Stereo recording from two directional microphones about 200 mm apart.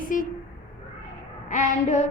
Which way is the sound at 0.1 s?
40° left (ahead or behind).